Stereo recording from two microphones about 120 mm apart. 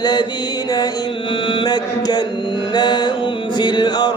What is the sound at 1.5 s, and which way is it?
Mantra, 35° left (ahead or behind).